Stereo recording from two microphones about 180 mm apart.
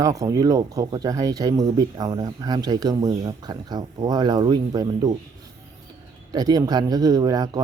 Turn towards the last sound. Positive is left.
turn(degrees=-20)  # may be behind; listen again after turning